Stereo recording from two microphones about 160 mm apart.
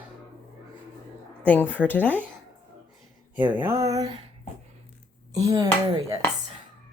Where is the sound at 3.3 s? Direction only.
10° right (ahead or behind).